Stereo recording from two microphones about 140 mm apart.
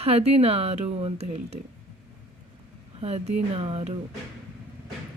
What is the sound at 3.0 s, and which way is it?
Speech, 50° right (ahead or behind).